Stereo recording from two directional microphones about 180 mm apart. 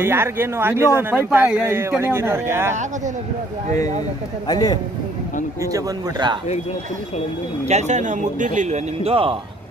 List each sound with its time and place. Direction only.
0.0 s speech: 10° right (ahead or behind)
4.5 s a man's voice: 20° left (ahead or behind)
5.6 s speech: 20° right (ahead or behind)
7.6 s a man's voice: 40° right (ahead or behind)